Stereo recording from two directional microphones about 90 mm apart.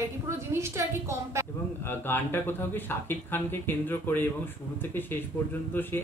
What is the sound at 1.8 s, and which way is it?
A man's voice, 25° left (ahead or behind).